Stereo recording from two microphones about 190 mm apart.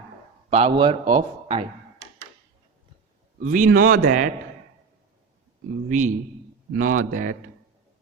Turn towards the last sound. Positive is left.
turn(degrees=-45)  # may be behind; listen again after turning